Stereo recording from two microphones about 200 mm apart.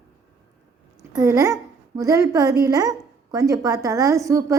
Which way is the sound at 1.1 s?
15° right (ahead or behind).